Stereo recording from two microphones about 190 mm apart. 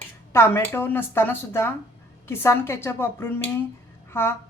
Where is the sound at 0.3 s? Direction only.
15° left (ahead or behind).